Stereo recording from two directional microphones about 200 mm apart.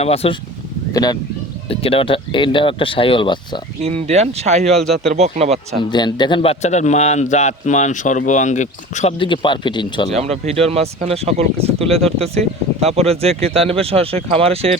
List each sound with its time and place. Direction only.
0.0 s a man's voice: 30° left (ahead or behind)
0.9 s speech: 20° left (ahead or behind)
3.8 s speech: 30° right (ahead or behind)
5.9 s a man's voice: 20° left (ahead or behind)
10.2 s speech: 30° right (ahead or behind)
11.9 s speech: centre (ahead or behind)
12.8 s speech: 30° right (ahead or behind)